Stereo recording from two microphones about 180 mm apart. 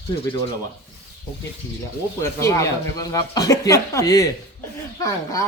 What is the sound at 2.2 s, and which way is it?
Speech, 15° left (ahead or behind).